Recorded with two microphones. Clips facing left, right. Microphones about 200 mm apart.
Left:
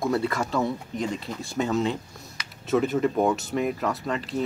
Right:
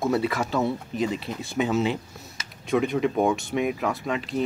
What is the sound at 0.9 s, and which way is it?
Speech, 25° right (ahead or behind).